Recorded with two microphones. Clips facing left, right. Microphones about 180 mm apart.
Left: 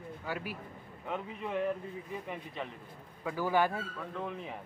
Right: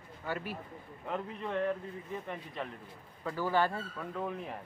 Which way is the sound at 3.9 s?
5° right (ahead or behind).